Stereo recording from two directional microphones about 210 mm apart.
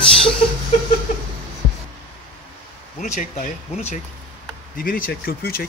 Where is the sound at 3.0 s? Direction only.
35° left (ahead or behind).